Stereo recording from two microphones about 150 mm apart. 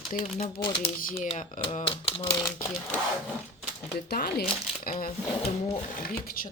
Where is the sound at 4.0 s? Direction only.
90° left.